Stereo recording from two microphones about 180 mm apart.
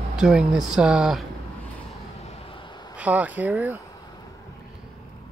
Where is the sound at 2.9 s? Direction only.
10° right (ahead or behind).